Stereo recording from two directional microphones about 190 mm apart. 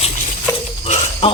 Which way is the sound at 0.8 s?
35° left (ahead or behind).